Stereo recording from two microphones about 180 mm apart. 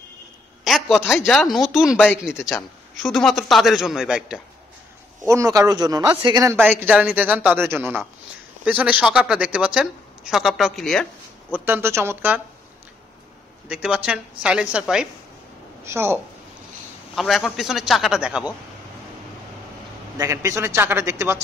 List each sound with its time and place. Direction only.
0.7 s a sound: centre (ahead or behind)
1.2 s speech: centre (ahead or behind)
5.2 s speech: 15° right (ahead or behind); by 11.1 s 5° left (ahead or behind)
11.5 s speech: 10° right (ahead or behind)
13.7 s a woman's voice: 5° right (ahead or behind)
17.1 s speech: centre (ahead or behind)
20.2 s speech: 15° right (ahead or behind)